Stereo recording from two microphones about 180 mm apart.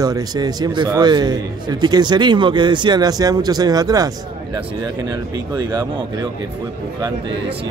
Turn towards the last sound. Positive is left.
turn(degrees=-20)  # may be behind; listen again after turning